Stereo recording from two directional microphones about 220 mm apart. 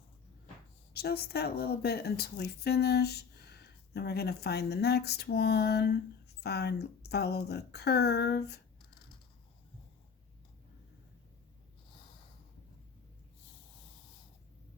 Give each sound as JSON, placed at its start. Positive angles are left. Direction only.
{"t": 0.9, "sound": "a woman's voice", "side_deg": 45}